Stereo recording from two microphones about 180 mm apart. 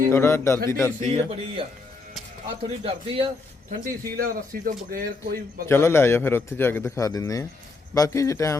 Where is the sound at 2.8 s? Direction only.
30° right (ahead or behind).